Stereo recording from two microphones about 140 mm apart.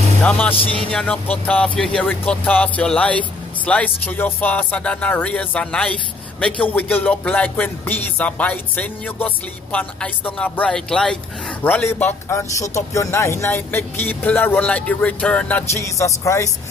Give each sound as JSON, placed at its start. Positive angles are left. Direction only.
{"t": 0.2, "sound": "speech", "side_deg": 10}
{"t": 15.8, "sound": "speech", "side_deg": 20}